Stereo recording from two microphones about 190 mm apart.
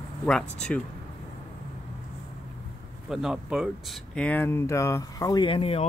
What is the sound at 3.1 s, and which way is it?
Speech, 5° right (ahead or behind).